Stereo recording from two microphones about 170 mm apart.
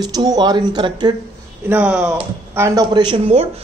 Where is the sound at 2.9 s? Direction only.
30° right (ahead or behind).